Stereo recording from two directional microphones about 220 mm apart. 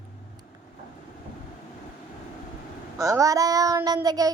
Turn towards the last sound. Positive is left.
turn(degrees=-15)  # may be behind; listen again after turning